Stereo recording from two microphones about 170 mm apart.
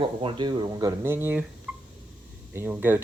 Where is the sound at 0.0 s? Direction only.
30° right (ahead or behind); by 1.5 s 10° right (ahead or behind).